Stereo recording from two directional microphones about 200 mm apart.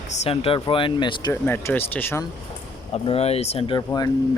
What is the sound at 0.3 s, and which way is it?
Speech, 30° left (ahead or behind).